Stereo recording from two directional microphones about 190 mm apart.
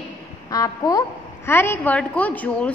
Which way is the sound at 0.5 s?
20° left (ahead or behind).